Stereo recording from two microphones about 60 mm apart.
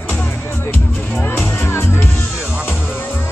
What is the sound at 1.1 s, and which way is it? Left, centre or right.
Music, left.